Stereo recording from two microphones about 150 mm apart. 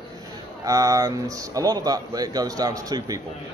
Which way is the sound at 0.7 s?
25° right (ahead or behind).